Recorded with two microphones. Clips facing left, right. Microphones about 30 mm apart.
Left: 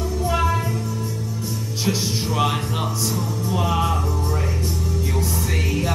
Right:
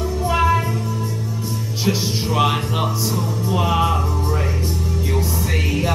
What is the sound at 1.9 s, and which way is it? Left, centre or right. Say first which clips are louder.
Music: right 2 dB; centre.